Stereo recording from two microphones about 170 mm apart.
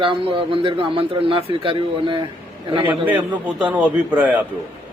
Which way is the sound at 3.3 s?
10° right (ahead or behind).